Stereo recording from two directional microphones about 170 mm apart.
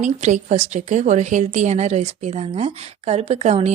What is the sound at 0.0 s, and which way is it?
Speech, 45° right (ahead or behind).